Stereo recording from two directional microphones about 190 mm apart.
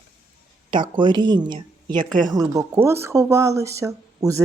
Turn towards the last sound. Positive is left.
turn(degrees=-15)  # may be behind; listen again after turning